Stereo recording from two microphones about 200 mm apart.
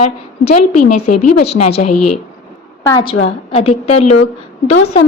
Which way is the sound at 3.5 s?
30° left (ahead or behind).